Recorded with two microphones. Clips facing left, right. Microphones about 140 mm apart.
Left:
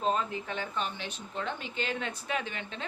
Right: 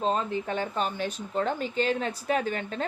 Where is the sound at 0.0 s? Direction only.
35° right (ahead or behind).